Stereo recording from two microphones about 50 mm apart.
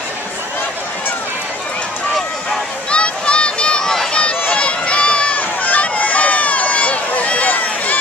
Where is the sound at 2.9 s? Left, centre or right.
Left.